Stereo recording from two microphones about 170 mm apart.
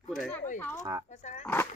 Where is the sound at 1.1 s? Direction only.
45° left (ahead or behind).